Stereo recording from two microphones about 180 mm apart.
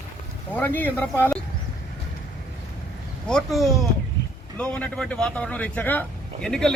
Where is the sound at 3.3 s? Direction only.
Centre (ahead or behind).